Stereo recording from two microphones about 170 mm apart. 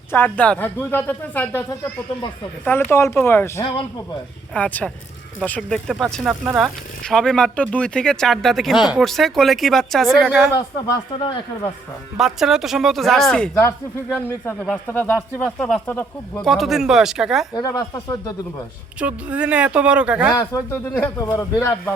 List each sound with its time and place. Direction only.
0.1 s speech: 10° left (ahead or behind)
2.9 s speech: 15° left (ahead or behind)
3.6 s speech: 25° left (ahead or behind)
4.5 s speech: 10° left (ahead or behind)
11.1 s speech: 30° left (ahead or behind)
12.1 s speech: centre (ahead or behind)
13.5 s speech: 15° left (ahead or behind); by 17.4 s 5° right (ahead or behind)
17.5 s speech: 20° left (ahead or behind)
18.9 s speech: 10° right (ahead or behind)
20.4 s speech: 15° left (ahead or behind)